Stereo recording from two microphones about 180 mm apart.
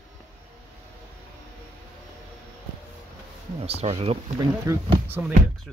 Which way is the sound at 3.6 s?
35° right (ahead or behind).